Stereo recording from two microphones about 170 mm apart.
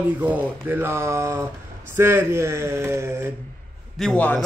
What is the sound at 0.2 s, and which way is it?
Speech, 10° right (ahead or behind).